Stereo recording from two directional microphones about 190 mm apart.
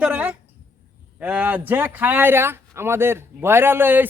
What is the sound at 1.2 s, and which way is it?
A man's voice, 5° right (ahead or behind).